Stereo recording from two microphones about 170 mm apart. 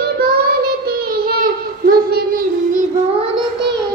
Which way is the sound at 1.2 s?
60° right (ahead or behind).